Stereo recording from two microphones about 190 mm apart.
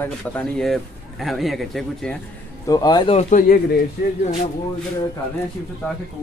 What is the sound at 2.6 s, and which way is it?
Speech, 20° left (ahead or behind).